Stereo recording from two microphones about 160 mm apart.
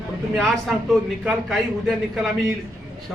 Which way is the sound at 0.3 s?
Centre (ahead or behind).